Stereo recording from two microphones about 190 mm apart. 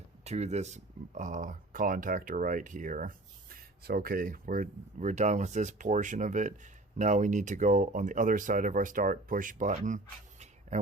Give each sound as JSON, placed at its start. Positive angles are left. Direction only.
{"t": 0.3, "sound": "speech", "side_deg": -35}